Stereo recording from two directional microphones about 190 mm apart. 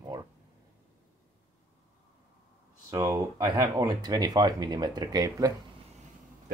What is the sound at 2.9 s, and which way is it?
Speech, 20° right (ahead or behind).